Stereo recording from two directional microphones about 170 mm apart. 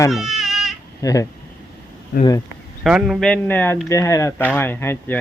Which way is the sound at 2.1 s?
60° left (ahead or behind).